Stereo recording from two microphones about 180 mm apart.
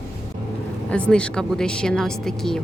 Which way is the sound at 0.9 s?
5° left (ahead or behind).